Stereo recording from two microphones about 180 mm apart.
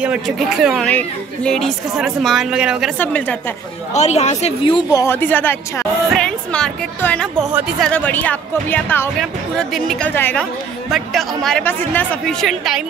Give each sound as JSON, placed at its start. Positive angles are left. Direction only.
{"t": 0.0, "sound": "speech", "side_deg": -5}
{"t": 3.0, "sound": "a woman's voice", "side_deg": 10}
{"t": 3.9, "sound": "speech", "side_deg": 40}
{"t": 5.0, "sound": "a woman's voice", "side_deg": 10}